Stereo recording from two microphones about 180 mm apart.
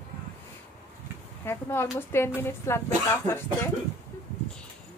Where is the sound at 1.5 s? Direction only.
10° left (ahead or behind).